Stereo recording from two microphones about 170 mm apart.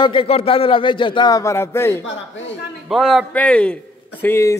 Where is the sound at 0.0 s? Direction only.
30° left (ahead or behind); by 2.0 s 15° left (ahead or behind).